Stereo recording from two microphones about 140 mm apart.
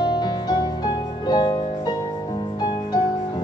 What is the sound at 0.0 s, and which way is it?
Music, 30° left (ahead or behind).